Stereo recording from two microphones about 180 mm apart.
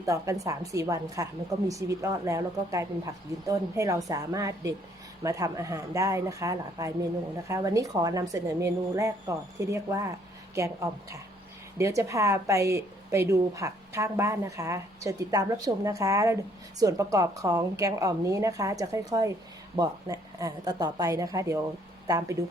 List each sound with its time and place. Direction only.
0.0 s a woman's voice: 20° right (ahead or behind)